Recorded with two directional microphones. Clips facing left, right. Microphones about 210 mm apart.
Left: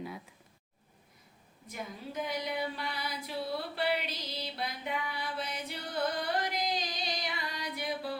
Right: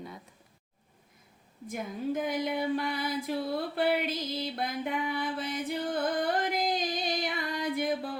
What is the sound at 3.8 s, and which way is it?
Music, 50° right (ahead or behind).